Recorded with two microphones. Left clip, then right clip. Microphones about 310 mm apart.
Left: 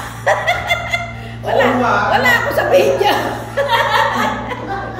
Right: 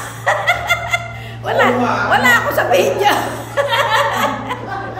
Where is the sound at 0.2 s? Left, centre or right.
Centre.